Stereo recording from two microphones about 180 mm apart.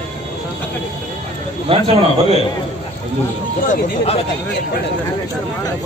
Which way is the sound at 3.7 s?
35° left (ahead or behind).